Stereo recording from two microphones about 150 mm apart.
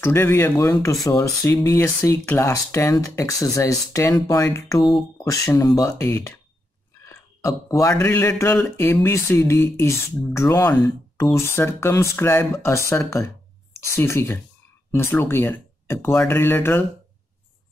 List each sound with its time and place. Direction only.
0.0 s speech: 15° left (ahead or behind)
7.1 s a sound: 20° left (ahead or behind)
8.0 s speech: 15° left (ahead or behind)